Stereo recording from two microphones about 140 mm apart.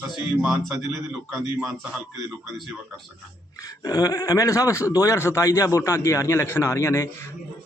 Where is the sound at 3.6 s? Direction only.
25° left (ahead or behind).